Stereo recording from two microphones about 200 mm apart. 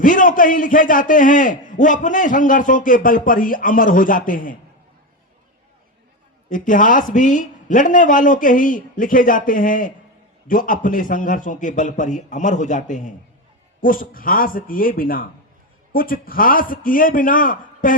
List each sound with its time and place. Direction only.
0.0 s a man's voice: 40° left (ahead or behind)
6.5 s a man's voice: 40° left (ahead or behind)